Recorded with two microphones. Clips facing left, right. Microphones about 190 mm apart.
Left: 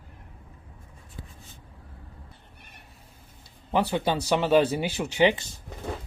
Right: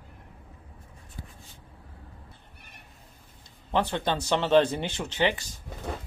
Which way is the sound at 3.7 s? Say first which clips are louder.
Left 2 dB; 10° left (ahead or behind).